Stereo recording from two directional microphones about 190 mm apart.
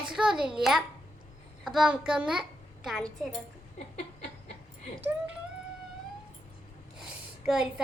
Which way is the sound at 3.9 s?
35° left (ahead or behind).